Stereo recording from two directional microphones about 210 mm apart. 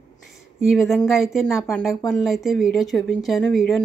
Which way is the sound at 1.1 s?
Centre (ahead or behind).